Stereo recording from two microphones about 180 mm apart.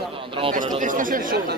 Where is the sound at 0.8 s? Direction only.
50° right (ahead or behind).